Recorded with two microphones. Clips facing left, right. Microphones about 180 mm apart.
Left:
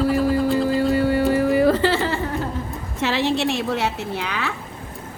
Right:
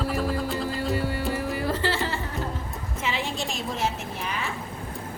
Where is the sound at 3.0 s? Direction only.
75° left (ahead or behind).